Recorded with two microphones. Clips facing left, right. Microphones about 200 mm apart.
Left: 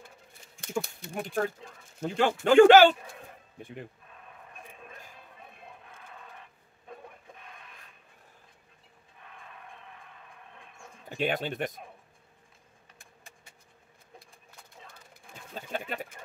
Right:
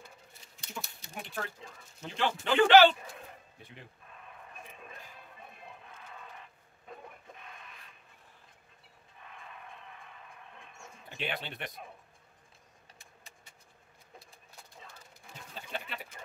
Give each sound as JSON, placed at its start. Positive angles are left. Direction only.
{"t": 0.6, "sound": "speech", "side_deg": 55}
{"t": 11.1, "sound": "speech", "side_deg": 45}
{"t": 15.5, "sound": "a sound", "side_deg": 45}